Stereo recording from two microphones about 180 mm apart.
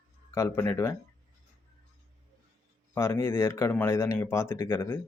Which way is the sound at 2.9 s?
15° left (ahead or behind).